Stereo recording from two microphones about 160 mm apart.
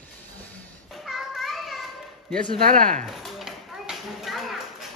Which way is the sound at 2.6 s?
55° right (ahead or behind).